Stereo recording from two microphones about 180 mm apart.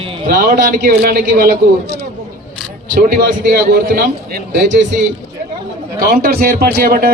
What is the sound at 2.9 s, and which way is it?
A man's voice, 60° right (ahead or behind).